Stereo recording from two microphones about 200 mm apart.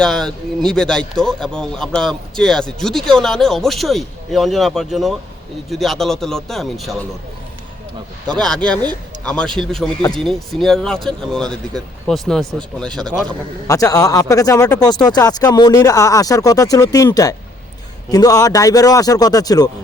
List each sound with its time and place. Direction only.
0.0 s speech: 5° left (ahead or behind)
8.3 s speech: 5° left (ahead or behind)
12.9 s a man's voice: 20° right (ahead or behind)
13.7 s a man's voice: 15° left (ahead or behind)